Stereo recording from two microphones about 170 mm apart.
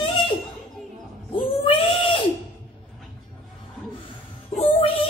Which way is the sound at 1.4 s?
30° left (ahead or behind).